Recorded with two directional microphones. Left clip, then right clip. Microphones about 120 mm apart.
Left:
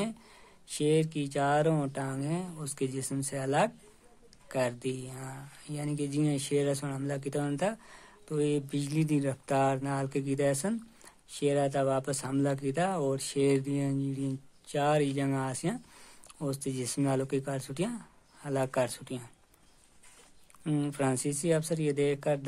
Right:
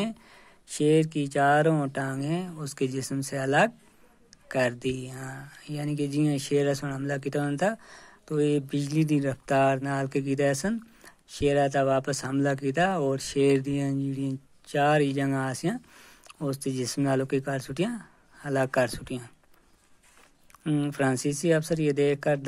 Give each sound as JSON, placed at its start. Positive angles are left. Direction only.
{"t": 0.0, "sound": "speech", "side_deg": -35}
{"t": 20.6, "sound": "speech", "side_deg": -20}
{"t": 20.9, "sound": "speech", "side_deg": -35}